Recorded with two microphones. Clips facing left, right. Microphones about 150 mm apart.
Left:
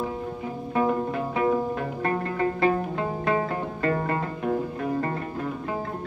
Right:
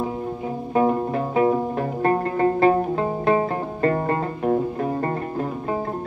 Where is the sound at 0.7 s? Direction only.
35° right (ahead or behind).